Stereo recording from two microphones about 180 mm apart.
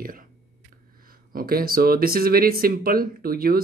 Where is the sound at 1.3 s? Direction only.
55° right (ahead or behind).